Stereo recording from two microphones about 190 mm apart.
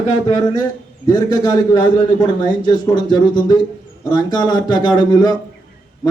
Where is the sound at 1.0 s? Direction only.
20° left (ahead or behind).